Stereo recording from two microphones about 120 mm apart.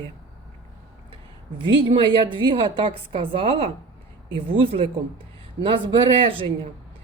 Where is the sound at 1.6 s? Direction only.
45° right (ahead or behind).